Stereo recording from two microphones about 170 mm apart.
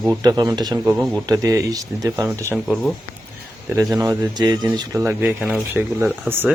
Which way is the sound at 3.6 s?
20° right (ahead or behind).